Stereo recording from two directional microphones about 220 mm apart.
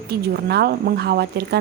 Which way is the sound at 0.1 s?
45° right (ahead or behind).